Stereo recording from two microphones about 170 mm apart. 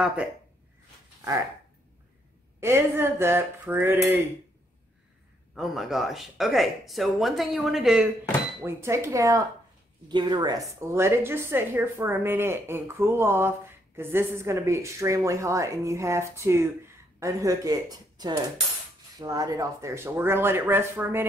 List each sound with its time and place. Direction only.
0.0 s speech: 5° right (ahead or behind)
2.6 s a woman's voice: 15° right (ahead or behind)
5.5 s speech: centre (ahead or behind)
8.6 s a woman's voice: 15° right (ahead or behind)